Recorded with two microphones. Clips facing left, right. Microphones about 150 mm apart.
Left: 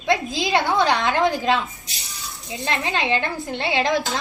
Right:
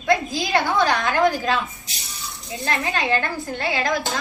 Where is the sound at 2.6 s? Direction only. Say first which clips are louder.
Even; 20° left (ahead or behind).